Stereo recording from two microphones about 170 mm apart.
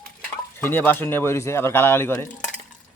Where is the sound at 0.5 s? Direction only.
10° left (ahead or behind).